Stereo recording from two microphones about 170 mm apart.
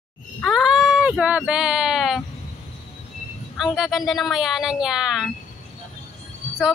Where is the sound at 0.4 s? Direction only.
Centre (ahead or behind).